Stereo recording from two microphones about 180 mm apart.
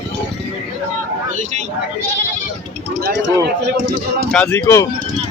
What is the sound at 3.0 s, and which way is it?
Speech, 70° right (ahead or behind).